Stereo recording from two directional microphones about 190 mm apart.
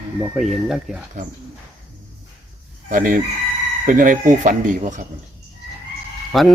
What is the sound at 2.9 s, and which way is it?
Speech, 45° right (ahead or behind).